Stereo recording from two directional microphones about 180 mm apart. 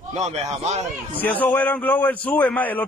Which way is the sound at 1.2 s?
10° left (ahead or behind).